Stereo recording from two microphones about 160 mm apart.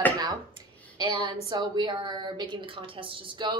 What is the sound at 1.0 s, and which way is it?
A woman's voice, 30° right (ahead or behind).